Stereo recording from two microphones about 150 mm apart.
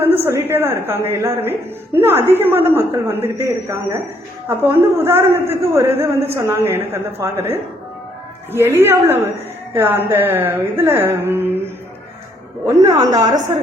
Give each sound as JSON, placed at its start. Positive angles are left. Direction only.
{"t": 0.0, "sound": "a woman's voice", "side_deg": -15}
{"t": 12.6, "sound": "a woman's voice", "side_deg": -25}